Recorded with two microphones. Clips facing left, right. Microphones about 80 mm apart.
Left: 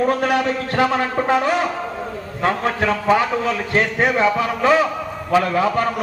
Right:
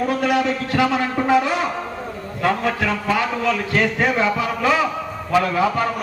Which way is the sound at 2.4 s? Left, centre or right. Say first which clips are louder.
Left 1 dB; left.